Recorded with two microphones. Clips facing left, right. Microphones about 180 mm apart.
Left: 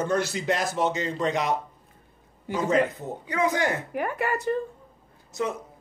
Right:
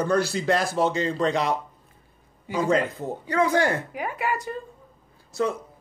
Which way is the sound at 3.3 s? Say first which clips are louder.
Right 3 dB; 15° left (ahead or behind).